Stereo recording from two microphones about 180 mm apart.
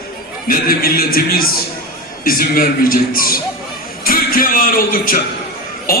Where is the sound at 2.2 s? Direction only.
55° left (ahead or behind).